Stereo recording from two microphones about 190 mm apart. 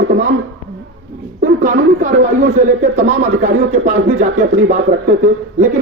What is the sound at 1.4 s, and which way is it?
Speech, 45° right (ahead or behind).